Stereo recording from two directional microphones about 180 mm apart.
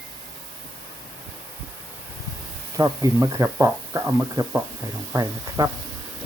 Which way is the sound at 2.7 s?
15° right (ahead or behind).